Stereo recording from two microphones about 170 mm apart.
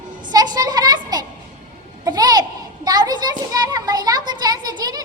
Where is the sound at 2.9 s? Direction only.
25° right (ahead or behind).